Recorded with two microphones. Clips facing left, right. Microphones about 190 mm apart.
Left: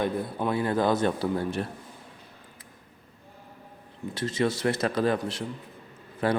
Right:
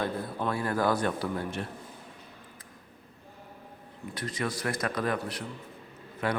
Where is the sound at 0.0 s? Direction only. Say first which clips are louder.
Left 3 dB; 15° left (ahead or behind).